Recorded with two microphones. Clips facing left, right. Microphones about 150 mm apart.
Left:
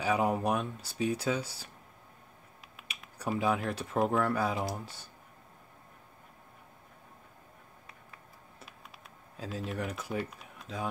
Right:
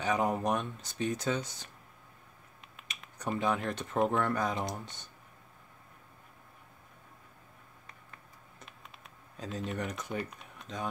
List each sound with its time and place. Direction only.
0.0 s speech: 5° left (ahead or behind)
2.9 s speech: 5° left (ahead or behind)
7.8 s computer keyboard: 5° left (ahead or behind)